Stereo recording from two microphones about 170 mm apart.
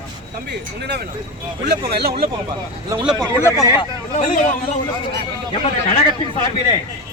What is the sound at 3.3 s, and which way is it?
Speech, 15° left (ahead or behind).